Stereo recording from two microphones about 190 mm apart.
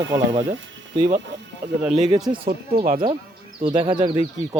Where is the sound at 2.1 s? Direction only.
20° right (ahead or behind).